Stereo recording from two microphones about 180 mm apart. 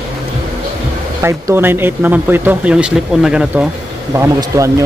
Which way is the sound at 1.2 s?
15° right (ahead or behind).